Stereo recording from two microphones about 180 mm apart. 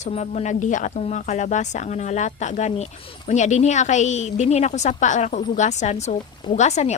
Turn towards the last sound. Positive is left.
turn(degrees=40)  # may be behind; listen again after turning